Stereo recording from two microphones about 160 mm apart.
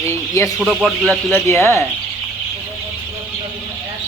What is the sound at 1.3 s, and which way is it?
Speech, 15° left (ahead or behind).